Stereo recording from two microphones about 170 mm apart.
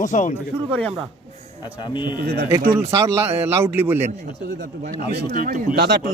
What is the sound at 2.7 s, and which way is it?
A man's voice, 15° right (ahead or behind).